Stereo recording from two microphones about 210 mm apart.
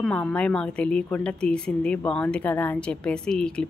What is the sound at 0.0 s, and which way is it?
A woman's voice, 5° left (ahead or behind).